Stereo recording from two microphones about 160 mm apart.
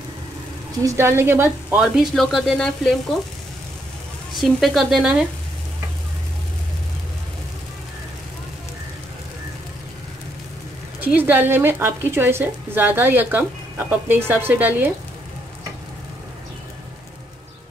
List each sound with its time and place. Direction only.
0.8 s a woman's voice: 15° right (ahead or behind)
1.8 s speech: centre (ahead or behind)
4.4 s speech: centre (ahead or behind)
11.0 s a woman's voice: 10° right (ahead or behind)